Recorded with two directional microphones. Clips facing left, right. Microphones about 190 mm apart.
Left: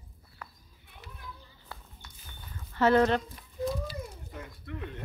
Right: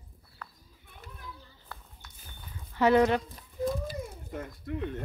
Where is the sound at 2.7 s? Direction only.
15° right (ahead or behind).